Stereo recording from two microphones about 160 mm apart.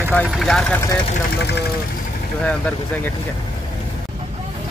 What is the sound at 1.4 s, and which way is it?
Speech, 90° left.